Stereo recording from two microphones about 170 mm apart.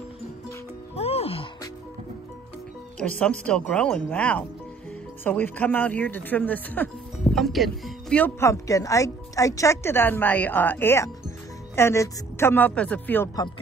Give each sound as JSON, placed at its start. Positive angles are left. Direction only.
{"t": 0.9, "sound": "music", "side_deg": 35}
{"t": 3.0, "sound": "speech", "side_deg": 5}